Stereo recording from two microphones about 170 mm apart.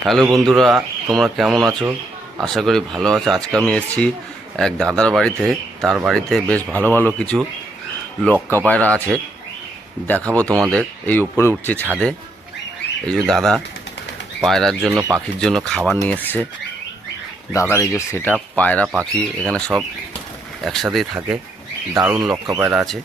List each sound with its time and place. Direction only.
0.3 s speech: centre (ahead or behind)
10.3 s speech: 20° right (ahead or behind)
10.7 s speech: 10° left (ahead or behind)
14.9 s speech: 15° right (ahead or behind)
15.4 s speech: 5° left (ahead or behind)
17.5 s speech: 15° left (ahead or behind); by 21.2 s centre (ahead or behind)
21.9 s speech: 15° right (ahead or behind)